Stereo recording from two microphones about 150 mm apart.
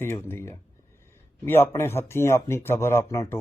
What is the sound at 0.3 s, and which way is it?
Speech, 15° left (ahead or behind).